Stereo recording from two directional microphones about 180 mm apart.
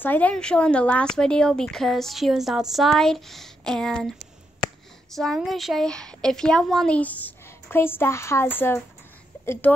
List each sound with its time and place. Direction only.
0.0 s speech: 10° left (ahead or behind)